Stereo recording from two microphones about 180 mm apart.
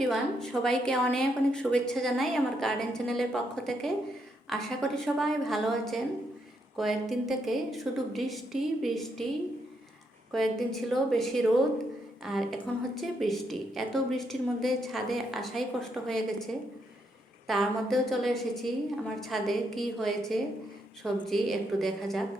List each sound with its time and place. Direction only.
0.0 s a woman's voice: centre (ahead or behind)
10.3 s a woman's voice: centre (ahead or behind)